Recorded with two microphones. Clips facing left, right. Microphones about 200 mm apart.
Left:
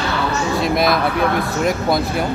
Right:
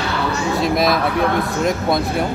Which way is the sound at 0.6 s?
Centre (ahead or behind).